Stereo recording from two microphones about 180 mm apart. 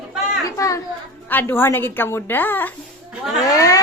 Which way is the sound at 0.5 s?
15° left (ahead or behind).